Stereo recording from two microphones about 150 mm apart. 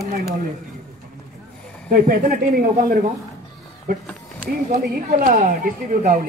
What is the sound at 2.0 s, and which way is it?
Speech, 70° right (ahead or behind).